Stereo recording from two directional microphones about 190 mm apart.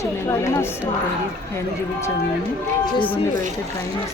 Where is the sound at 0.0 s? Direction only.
15° left (ahead or behind).